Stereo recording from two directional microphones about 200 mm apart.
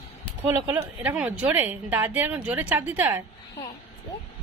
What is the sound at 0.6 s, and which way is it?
Speech, 10° right (ahead or behind).